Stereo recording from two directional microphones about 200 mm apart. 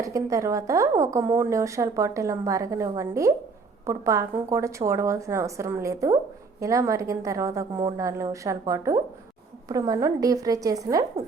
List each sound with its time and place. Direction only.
0.0 s a woman's voice: 15° right (ahead or behind)